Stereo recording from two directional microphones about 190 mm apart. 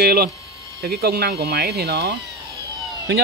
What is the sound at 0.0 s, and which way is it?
Speech, 55° right (ahead or behind).